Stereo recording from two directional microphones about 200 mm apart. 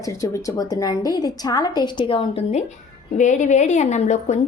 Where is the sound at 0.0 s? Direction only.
15° left (ahead or behind).